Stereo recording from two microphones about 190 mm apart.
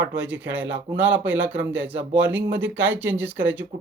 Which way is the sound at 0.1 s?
10° right (ahead or behind).